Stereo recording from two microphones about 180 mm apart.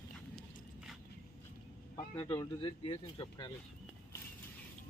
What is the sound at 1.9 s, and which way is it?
Speech, 20° left (ahead or behind).